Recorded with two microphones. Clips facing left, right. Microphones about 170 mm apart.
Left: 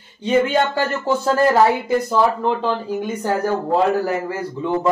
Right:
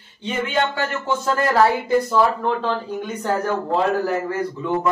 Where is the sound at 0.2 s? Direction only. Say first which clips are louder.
Left 5 dB; 40° left (ahead or behind).